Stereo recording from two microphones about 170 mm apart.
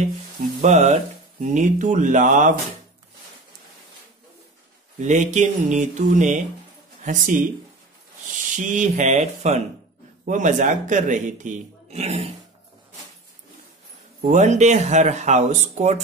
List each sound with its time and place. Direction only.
0.6 s speech: 45° right (ahead or behind)
5.0 s a man's voice: 45° right (ahead or behind)
8.5 s speech: 50° right (ahead or behind)
14.2 s speech: 45° right (ahead or behind)